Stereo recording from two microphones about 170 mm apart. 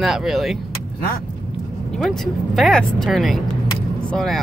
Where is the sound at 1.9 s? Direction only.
Centre (ahead or behind).